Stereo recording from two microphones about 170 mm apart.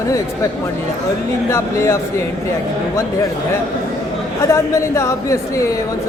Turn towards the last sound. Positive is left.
turn(degrees=15)  # may be behind; listen again after turning